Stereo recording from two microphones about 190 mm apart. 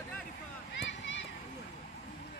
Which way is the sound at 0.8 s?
75° left (ahead or behind).